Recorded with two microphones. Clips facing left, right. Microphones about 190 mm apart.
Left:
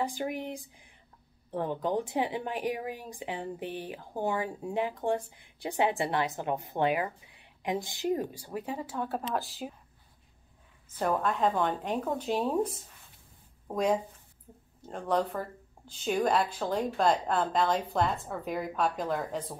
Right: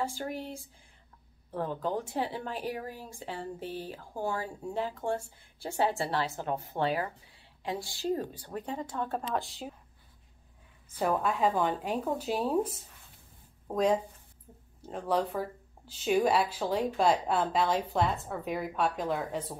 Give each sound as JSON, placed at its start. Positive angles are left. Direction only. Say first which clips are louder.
{"t": 0.0, "sound": "a woman's voice", "louder": "left 2 dB", "side_deg": 15}
{"t": 11.0, "sound": "a woman's voice", "louder": "even", "side_deg": -5}